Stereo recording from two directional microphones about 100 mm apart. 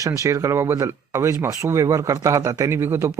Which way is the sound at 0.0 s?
35° right (ahead or behind).